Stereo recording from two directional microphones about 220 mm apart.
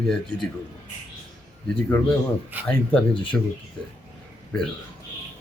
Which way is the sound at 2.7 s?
5° left (ahead or behind).